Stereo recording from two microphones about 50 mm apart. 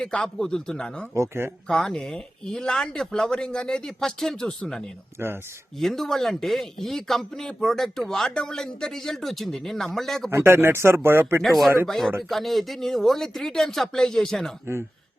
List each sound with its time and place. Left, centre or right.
0.0 s speech: centre
1.1 s speech: right
1.6 s speech: centre
5.2 s speech: right
5.8 s speech: centre
10.2 s speech: right
11.4 s speech: centre